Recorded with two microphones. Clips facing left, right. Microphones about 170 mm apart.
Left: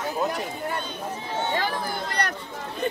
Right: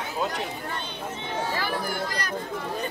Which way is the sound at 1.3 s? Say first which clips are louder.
Left 3 dB; 25° left (ahead or behind).